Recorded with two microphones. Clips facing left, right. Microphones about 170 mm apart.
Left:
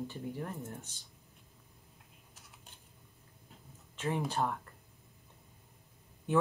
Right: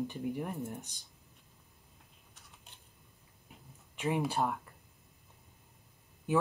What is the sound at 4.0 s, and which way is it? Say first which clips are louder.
Speech: right 2 dB; 10° right (ahead or behind).